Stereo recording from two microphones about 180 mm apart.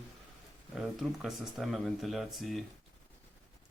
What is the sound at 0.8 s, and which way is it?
Speech, centre (ahead or behind).